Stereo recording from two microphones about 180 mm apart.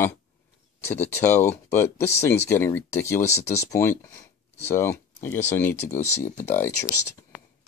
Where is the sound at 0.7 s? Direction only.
10° left (ahead or behind).